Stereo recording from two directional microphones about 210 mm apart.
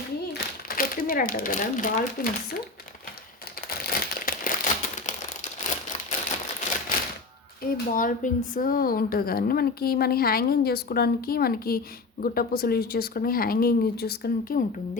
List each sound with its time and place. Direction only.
0.3 s speech: 45° left (ahead or behind)
3.7 s crumpling: 45° left (ahead or behind)
7.6 s speech: 40° left (ahead or behind)